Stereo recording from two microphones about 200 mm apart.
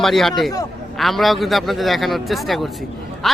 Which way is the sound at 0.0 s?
Centre (ahead or behind).